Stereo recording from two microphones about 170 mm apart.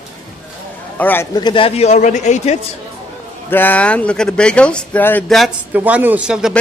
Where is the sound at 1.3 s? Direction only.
25° left (ahead or behind); by 2.6 s 45° left (ahead or behind).